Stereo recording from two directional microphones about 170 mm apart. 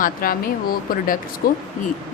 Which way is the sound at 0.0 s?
60° left (ahead or behind).